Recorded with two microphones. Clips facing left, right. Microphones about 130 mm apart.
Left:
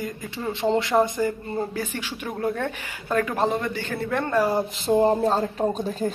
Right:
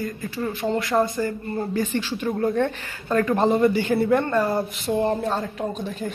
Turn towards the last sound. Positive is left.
turn(degrees=40)  # may be behind; listen again after turning